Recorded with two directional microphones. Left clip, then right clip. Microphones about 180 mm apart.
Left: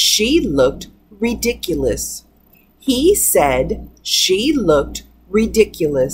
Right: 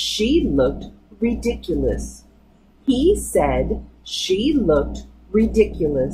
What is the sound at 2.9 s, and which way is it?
A woman's voice, 10° left (ahead or behind).